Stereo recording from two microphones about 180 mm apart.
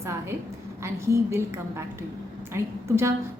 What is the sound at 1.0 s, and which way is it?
Speech, 15° right (ahead or behind).